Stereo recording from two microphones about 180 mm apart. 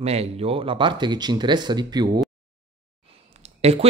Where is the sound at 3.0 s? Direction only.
35° right (ahead or behind).